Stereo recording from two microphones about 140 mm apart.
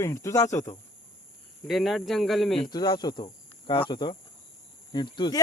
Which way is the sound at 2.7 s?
30° left (ahead or behind).